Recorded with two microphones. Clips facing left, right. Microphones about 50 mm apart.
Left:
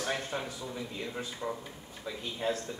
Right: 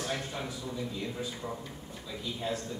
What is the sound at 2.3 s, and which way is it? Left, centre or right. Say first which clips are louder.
Speech: left 3 dB; left.